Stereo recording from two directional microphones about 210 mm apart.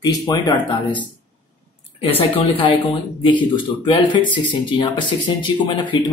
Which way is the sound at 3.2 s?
25° left (ahead or behind).